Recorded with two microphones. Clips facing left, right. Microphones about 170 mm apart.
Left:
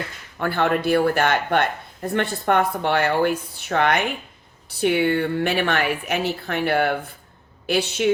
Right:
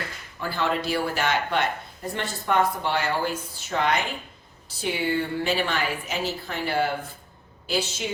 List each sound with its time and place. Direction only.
0.3 s speech: 60° left (ahead or behind)